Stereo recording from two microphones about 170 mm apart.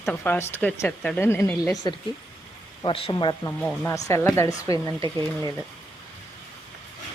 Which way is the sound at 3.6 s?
10° left (ahead or behind).